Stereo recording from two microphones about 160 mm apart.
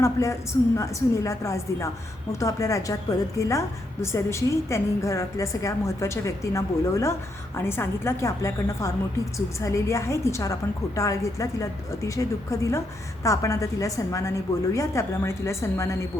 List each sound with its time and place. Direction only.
0.0 s a woman's voice: 20° left (ahead or behind)